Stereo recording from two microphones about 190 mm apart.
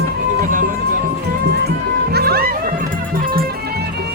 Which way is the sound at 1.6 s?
55° right (ahead or behind).